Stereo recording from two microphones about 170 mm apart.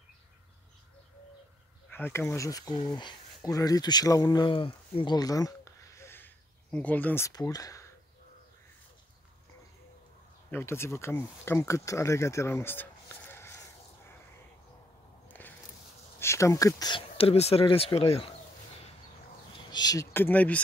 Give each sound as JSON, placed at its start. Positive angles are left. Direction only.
{"t": 1.9, "sound": "speech", "side_deg": 10}
{"t": 10.5, "sound": "speech", "side_deg": 15}
{"t": 15.2, "sound": "biting", "side_deg": 10}
{"t": 16.2, "sound": "speech", "side_deg": 15}
{"t": 19.5, "sound": "speech", "side_deg": 25}